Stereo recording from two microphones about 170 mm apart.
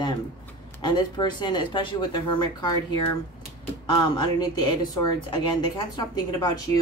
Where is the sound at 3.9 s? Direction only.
25° left (ahead or behind).